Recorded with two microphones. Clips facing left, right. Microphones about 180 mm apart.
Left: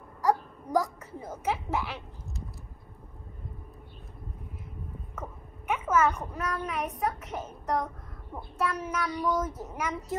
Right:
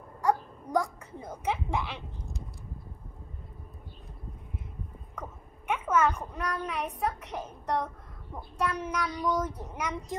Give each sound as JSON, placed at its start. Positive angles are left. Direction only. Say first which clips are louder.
{"t": 0.3, "sound": "a child's voice", "louder": "left 1 dB", "side_deg": 5}
{"t": 5.1, "sound": "a sound", "louder": "right 1 dB", "side_deg": 5}
{"t": 7.0, "sound": "a child's voice", "louder": "left 1 dB", "side_deg": 0}